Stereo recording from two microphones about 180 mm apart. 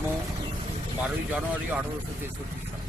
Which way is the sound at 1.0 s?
10° right (ahead or behind).